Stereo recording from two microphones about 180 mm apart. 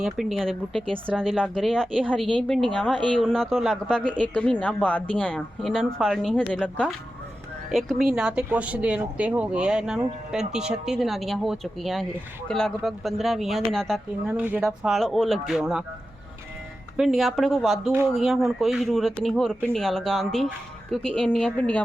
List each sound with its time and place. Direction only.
0.0 s speech: centre (ahead or behind)
2.9 s speech: 25° right (ahead or behind)
3.2 s speech: 5° left (ahead or behind)
17.0 s a woman's voice: centre (ahead or behind)